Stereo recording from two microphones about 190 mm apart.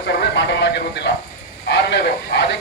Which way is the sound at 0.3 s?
65° left (ahead or behind).